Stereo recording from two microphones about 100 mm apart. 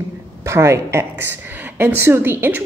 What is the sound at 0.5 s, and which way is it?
A woman's voice, 25° right (ahead or behind).